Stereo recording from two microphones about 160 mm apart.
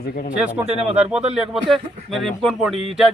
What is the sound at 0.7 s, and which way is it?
Speech, 40° right (ahead or behind).